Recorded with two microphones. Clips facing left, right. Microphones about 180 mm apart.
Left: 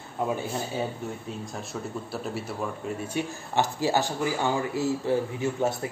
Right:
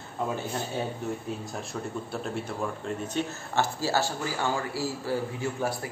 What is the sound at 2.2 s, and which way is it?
Speech, 5° left (ahead or behind).